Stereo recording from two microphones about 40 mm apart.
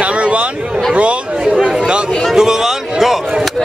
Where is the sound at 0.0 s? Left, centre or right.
Right.